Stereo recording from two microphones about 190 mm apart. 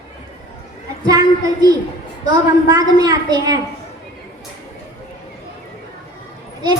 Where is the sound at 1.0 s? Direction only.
20° right (ahead or behind).